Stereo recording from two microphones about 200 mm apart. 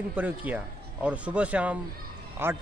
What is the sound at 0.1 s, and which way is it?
Speech, 10° right (ahead or behind).